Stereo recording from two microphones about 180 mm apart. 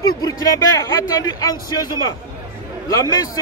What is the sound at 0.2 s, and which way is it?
A man's voice, 20° left (ahead or behind).